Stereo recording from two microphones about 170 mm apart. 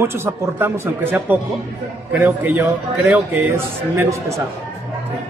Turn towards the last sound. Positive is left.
turn(degrees=-15)  # may be behind; listen again after turning